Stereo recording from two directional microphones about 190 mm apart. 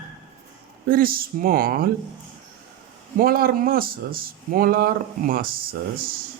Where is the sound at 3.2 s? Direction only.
50° right (ahead or behind).